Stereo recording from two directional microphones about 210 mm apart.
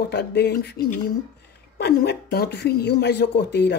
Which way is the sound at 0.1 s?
55° left (ahead or behind).